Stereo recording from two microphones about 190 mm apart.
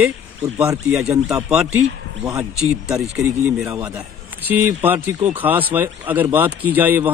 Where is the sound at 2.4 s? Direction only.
5° right (ahead or behind).